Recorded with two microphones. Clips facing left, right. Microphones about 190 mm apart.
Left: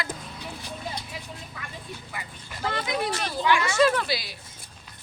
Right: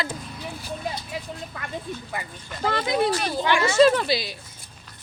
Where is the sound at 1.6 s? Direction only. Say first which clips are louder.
Right 5 dB; 55° right (ahead or behind).